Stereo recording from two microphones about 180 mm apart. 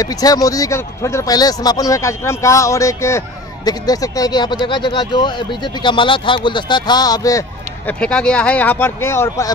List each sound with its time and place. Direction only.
0.0 s speech: 20° left (ahead or behind)
8.0 s speech: 5° left (ahead or behind)